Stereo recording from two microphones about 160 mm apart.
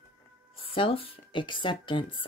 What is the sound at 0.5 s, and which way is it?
Speech, 35° left (ahead or behind).